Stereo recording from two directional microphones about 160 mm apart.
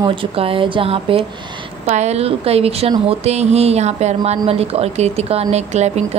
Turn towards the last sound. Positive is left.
turn(degrees=-45)  # may be behind; listen again after turning